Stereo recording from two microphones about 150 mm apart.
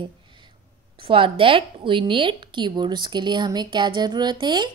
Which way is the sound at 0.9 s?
35° right (ahead or behind).